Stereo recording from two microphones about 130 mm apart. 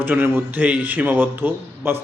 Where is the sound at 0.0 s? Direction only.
15° right (ahead or behind).